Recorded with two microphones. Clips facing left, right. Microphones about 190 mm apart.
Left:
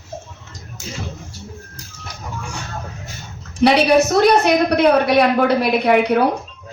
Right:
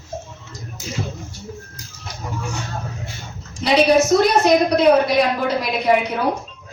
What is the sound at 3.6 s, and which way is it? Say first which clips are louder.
A woman's voice: left 2 dB; 60° left (ahead or behind).